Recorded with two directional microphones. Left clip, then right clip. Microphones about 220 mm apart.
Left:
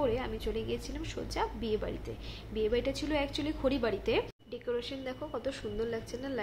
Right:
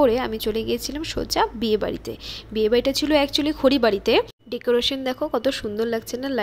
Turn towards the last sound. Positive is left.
turn(degrees=-40)  # may be behind; listen again after turning